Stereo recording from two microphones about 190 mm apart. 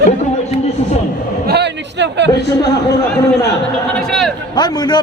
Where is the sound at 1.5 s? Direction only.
65° right (ahead or behind).